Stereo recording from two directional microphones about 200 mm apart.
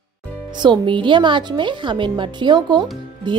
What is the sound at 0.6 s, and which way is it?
Speech, 25° right (ahead or behind).